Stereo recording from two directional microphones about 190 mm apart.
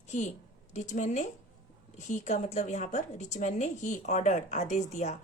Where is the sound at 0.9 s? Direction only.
40° left (ahead or behind).